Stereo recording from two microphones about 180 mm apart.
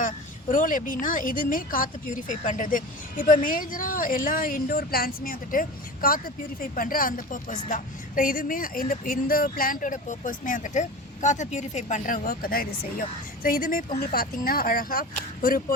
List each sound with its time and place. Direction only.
0.0 s a woman's voice: 45° left (ahead or behind)